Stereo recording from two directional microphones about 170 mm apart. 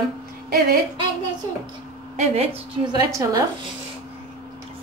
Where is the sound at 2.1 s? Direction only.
40° right (ahead or behind).